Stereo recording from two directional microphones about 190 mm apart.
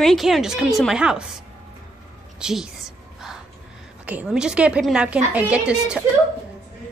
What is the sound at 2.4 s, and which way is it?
Speech, 5° right (ahead or behind).